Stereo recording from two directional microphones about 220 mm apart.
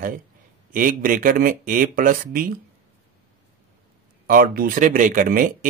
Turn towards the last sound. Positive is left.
turn(degrees=-40)  # may be behind; listen again after turning